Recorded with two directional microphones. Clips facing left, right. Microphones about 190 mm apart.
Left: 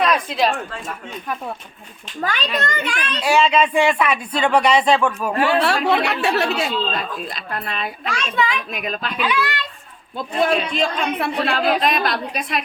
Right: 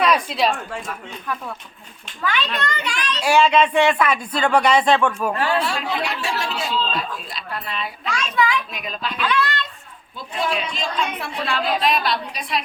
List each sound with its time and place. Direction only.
0.0 s a woman's voice: centre (ahead or behind)
2.2 s a woman's voice: 40° left (ahead or behind)
3.2 s speech: 5° left (ahead or behind)
5.5 s speech: 70° left (ahead or behind)
8.1 s a child's voice: 20° left (ahead or behind)
8.7 s a woman's voice: 55° left (ahead or behind)
9.1 s speech: 10° left (ahead or behind)
10.2 s a woman's voice: 55° left (ahead or behind)